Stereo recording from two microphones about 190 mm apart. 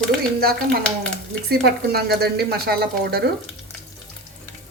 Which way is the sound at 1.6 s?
55° right (ahead or behind).